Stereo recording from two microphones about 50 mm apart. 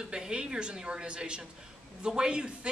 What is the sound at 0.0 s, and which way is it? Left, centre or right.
A woman's voice, centre.